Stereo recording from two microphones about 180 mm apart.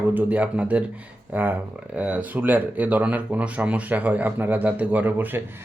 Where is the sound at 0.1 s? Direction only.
10° right (ahead or behind).